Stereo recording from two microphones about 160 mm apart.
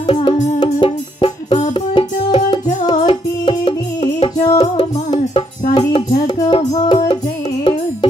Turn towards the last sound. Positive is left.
turn(degrees=35)  # may be behind; listen again after turning